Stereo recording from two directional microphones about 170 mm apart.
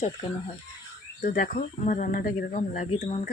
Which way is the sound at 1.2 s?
55° left (ahead or behind).